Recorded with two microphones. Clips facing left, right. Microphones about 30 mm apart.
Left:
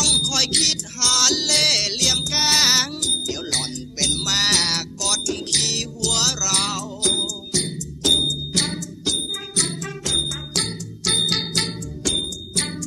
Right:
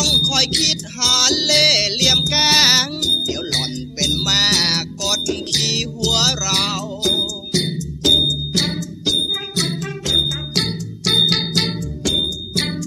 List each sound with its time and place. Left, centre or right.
0.0 s music: centre
0.3 s speech: centre
1.0 s music: centre
7.0 s music: centre
7.5 s music: right
8.0 s music: centre
11.3 s ding: centre